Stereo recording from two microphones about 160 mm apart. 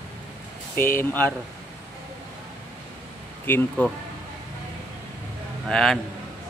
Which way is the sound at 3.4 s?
10° left (ahead or behind).